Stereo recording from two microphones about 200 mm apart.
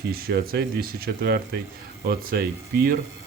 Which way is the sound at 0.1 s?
50° right (ahead or behind).